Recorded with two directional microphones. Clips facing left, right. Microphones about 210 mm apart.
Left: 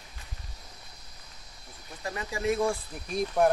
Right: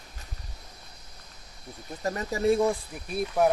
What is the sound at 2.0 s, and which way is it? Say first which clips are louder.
Speech: right 5 dB; 40° right (ahead or behind).